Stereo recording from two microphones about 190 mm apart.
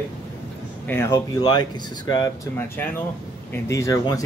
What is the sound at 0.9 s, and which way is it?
Speech, 15° left (ahead or behind).